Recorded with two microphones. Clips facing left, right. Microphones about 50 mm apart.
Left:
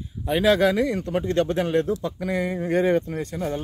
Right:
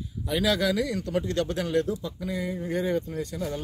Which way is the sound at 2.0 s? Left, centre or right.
Left.